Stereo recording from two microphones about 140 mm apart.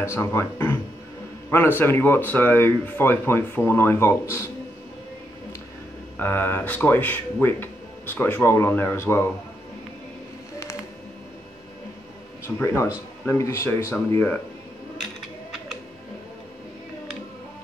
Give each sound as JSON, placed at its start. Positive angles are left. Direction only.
{"t": 0.0, "sound": "speech", "side_deg": 20}
{"t": 6.1, "sound": "speech", "side_deg": 15}
{"t": 12.4, "sound": "speech", "side_deg": 20}